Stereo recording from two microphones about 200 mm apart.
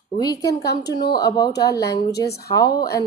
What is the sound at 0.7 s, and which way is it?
Speech, 55° left (ahead or behind).